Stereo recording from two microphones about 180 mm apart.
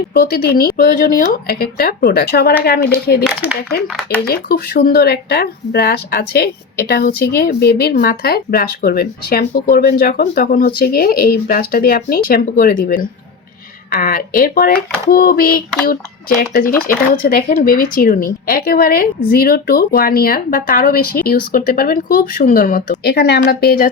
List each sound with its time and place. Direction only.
0.1 s speech: 60° left (ahead or behind)
4.3 s speech: 55° left (ahead or behind)